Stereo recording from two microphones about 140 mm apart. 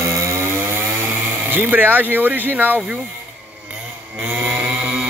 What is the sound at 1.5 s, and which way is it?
Speech, 15° right (ahead or behind).